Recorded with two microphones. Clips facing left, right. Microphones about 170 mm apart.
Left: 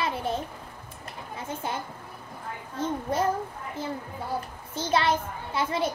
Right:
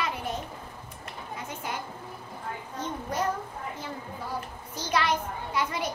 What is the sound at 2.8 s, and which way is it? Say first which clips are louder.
Speech: left 5 dB; 25° left (ahead or behind).